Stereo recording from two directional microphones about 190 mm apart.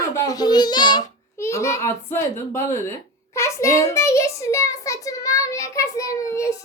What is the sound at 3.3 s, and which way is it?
A child's voice, 15° left (ahead or behind).